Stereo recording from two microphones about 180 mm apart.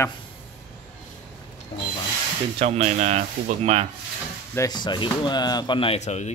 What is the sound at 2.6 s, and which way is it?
Speech, 35° right (ahead or behind).